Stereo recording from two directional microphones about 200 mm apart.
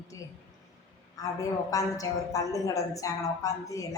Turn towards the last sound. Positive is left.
turn(degrees=15)  # may be behind; listen again after turning